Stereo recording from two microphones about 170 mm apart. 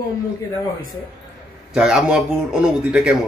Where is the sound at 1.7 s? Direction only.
5° right (ahead or behind).